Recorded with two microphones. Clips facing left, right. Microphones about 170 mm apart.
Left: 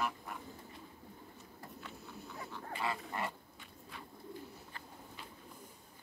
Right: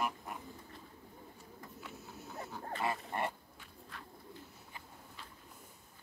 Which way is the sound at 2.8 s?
25° right (ahead or behind).